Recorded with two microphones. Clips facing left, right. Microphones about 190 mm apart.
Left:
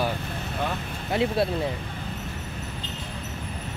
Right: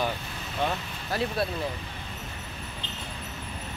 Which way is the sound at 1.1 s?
20° left (ahead or behind).